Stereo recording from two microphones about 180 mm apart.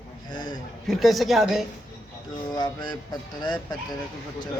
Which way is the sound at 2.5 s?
25° left (ahead or behind).